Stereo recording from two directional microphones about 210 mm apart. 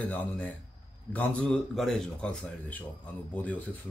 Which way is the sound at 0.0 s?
5° left (ahead or behind).